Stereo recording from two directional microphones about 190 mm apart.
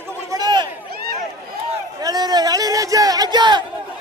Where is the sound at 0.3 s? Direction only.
20° right (ahead or behind).